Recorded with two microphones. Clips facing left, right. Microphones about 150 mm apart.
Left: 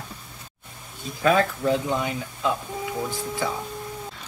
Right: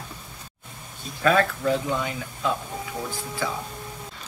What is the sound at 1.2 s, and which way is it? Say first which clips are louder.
Speech: left 1 dB; 20° left (ahead or behind).